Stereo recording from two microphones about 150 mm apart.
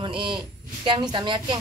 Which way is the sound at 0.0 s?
35° right (ahead or behind).